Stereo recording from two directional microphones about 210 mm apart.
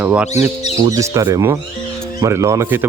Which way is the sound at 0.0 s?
10° right (ahead or behind).